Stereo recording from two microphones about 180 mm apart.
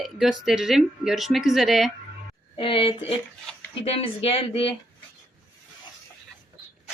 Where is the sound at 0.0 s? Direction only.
Centre (ahead or behind).